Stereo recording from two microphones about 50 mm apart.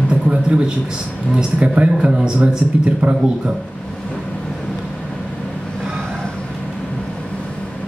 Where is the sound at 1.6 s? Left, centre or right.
Right.